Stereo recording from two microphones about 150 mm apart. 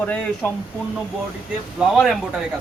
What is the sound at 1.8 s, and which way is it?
Speech, centre (ahead or behind).